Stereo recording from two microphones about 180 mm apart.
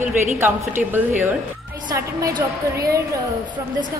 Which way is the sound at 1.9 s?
15° right (ahead or behind).